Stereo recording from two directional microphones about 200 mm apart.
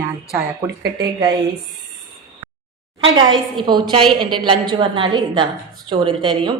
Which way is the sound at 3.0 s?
20° right (ahead or behind).